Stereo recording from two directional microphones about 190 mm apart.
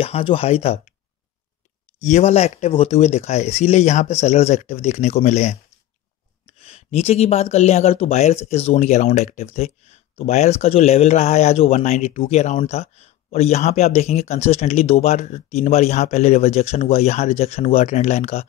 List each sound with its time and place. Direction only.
0.0 s speech: 30° left (ahead or behind)
2.0 s speech: 35° left (ahead or behind)
6.6 s speech: 35° left (ahead or behind)